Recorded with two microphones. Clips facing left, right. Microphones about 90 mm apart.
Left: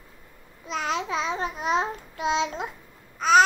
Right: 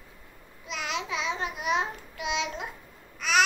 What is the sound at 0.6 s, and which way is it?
Babbling, 35° left (ahead or behind).